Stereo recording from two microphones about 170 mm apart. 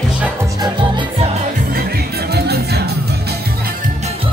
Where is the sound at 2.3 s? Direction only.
70° right (ahead or behind).